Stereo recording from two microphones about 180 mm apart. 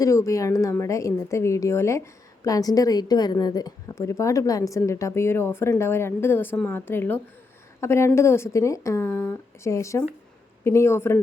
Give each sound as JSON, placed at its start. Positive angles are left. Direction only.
{"t": 0.0, "sound": "a woman's voice", "side_deg": 15}